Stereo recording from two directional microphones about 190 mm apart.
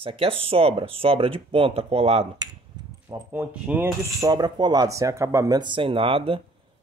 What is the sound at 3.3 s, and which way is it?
Speech, 10° right (ahead or behind).